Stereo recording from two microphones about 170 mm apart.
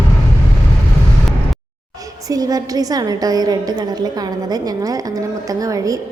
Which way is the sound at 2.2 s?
20° right (ahead or behind).